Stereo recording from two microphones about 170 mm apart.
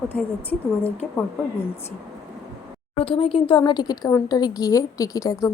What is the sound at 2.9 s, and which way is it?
A woman's voice, 30° left (ahead or behind).